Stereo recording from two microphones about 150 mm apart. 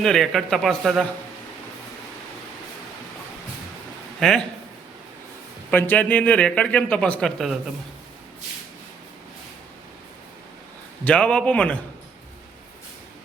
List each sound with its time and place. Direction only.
0.0 s a man's voice: centre (ahead or behind)
4.2 s a man's voice: 5° left (ahead or behind)
5.7 s a man's voice: 10° left (ahead or behind)
11.0 s a man's voice: 5° left (ahead or behind)